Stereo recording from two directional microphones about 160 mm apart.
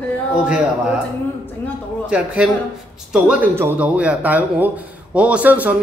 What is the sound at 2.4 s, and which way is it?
A man's voice, 5° right (ahead or behind).